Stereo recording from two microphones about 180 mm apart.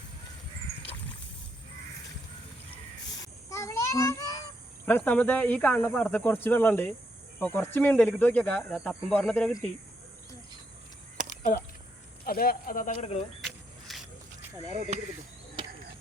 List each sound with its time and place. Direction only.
3.5 s child singing: 15° left (ahead or behind)
4.9 s speech: 10° left (ahead or behind)
12.2 s speech: 55° left (ahead or behind)
12.9 s speech: 35° left (ahead or behind)
13.4 s a sound: centre (ahead or behind)
14.9 s speech: 40° right (ahead or behind)